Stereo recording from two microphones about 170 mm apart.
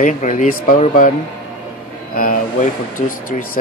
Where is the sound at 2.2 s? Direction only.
55° left (ahead or behind).